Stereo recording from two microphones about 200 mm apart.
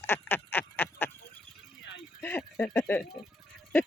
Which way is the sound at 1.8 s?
65° left (ahead or behind).